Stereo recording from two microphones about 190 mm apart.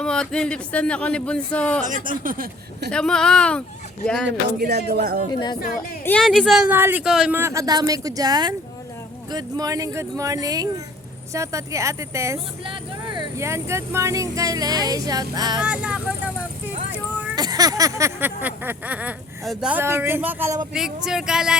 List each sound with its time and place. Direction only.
0.0 s speech: 5° left (ahead or behind)
1.8 s speech: 45° right (ahead or behind)
2.9 s speech: 5° left (ahead or behind)
4.3 s speech: 60° right (ahead or behind)
5.3 s speech: 25° left (ahead or behind)
6.1 s a sound: 5° left (ahead or behind); by 8.5 s 20° right (ahead or behind)
9.3 s speech: 20° right (ahead or behind)
11.3 s a sound: 15° right (ahead or behind)
12.6 s speech: 25° right (ahead or behind)
15.6 s speech: 5° right (ahead or behind)
17.3 s a sound: 20° right (ahead or behind)
20.7 s speech: 5° right (ahead or behind)